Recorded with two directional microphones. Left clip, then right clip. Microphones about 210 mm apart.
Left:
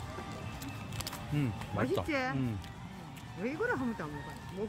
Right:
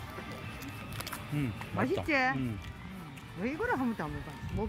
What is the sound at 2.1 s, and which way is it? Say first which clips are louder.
Speech: right 5 dB; 40° right (ahead or behind).